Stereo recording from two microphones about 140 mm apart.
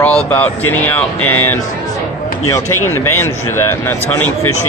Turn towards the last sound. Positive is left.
turn(degrees=15)  # may be behind; listen again after turning